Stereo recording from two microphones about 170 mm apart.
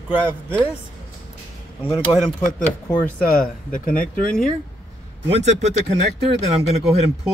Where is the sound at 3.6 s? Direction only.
50° left (ahead or behind).